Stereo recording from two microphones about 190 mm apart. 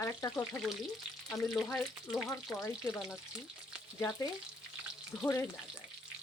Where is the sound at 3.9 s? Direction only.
20° left (ahead or behind).